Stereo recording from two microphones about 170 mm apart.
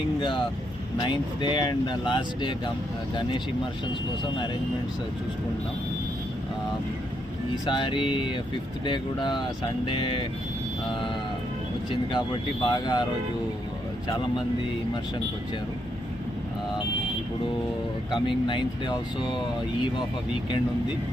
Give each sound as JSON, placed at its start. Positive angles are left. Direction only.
{"t": 0.2, "sound": "speech", "side_deg": 30}
{"t": 7.5, "sound": "speech", "side_deg": 25}
{"t": 11.9, "sound": "speech", "side_deg": 25}
{"t": 18.1, "sound": "speech", "side_deg": 30}